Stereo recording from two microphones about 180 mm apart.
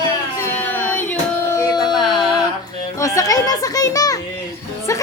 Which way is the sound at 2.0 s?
Centre (ahead or behind).